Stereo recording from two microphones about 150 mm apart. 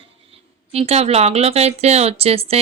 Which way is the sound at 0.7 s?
45° right (ahead or behind).